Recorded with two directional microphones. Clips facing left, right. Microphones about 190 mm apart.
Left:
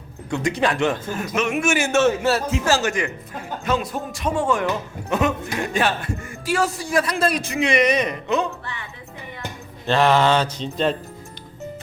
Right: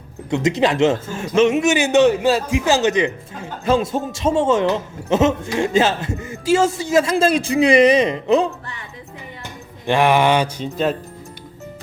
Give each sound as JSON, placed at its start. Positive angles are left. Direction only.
{"t": 0.3, "sound": "a man's voice", "side_deg": -20}
{"t": 9.8, "sound": "mantra", "side_deg": -15}